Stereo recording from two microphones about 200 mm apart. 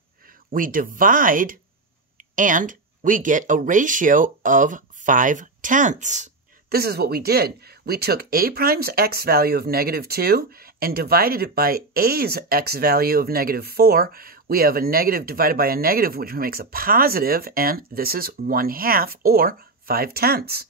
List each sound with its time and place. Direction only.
0.5 s speech: 45° right (ahead or behind)
6.7 s speech: 50° right (ahead or behind)